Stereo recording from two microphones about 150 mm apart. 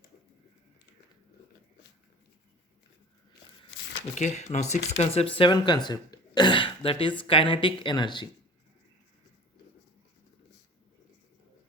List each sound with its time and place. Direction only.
4.1 s speech: 50° left (ahead or behind); by 8.3 s 30° left (ahead or behind)